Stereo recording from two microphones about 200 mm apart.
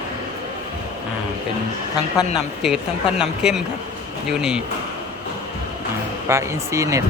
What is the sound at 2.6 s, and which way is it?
Speech, centre (ahead or behind).